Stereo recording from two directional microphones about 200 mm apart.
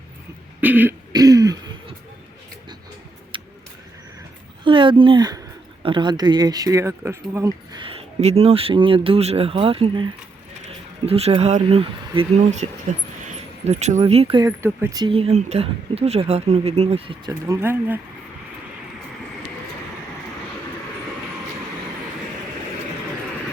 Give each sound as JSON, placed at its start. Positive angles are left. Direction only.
{"t": 0.6, "sound": "speech", "side_deg": -10}
{"t": 1.1, "sound": "throat clearing", "side_deg": -20}
{"t": 3.3, "sound": "vehicle", "side_deg": -25}
{"t": 4.6, "sound": "speech", "side_deg": -25}
{"t": 13.7, "sound": "speech", "side_deg": -35}
{"t": 14.4, "sound": "speech", "side_deg": -15}
{"t": 17.4, "sound": "speech", "side_deg": -10}